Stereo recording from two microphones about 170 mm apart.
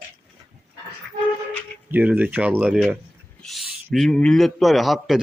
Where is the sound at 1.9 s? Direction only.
10° right (ahead or behind).